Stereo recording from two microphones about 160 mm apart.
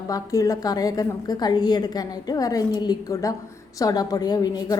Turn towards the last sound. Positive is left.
turn(degrees=25)  # may be behind; listen again after turning